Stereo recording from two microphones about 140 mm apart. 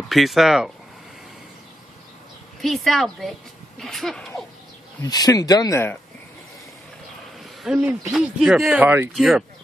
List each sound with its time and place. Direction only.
0.1 s speech: centre (ahead or behind)
2.6 s speech: centre (ahead or behind)
5.0 s speech: 25° left (ahead or behind)
7.6 s speech: 5° right (ahead or behind)
8.8 s speech: 15° right (ahead or behind)
9.1 s speech: centre (ahead or behind)